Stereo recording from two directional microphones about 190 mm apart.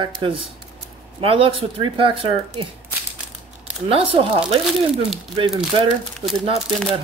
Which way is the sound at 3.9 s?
30° right (ahead or behind).